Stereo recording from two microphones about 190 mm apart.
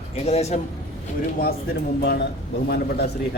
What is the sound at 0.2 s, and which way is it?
Speech, 35° left (ahead or behind).